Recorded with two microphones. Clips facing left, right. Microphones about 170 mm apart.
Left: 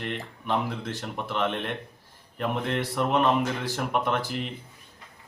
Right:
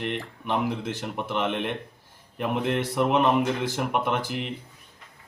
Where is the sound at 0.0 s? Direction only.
15° right (ahead or behind).